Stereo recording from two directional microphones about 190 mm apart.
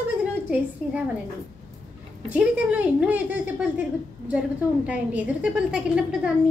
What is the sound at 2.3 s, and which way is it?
A woman's voice, 5° right (ahead or behind).